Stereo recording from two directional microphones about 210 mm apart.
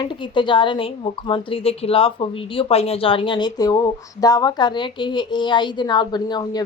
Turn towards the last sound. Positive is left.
turn(degrees=20)  # may be behind; listen again after turning